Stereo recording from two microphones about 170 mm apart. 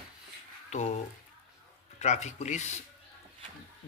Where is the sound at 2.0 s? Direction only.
40° left (ahead or behind).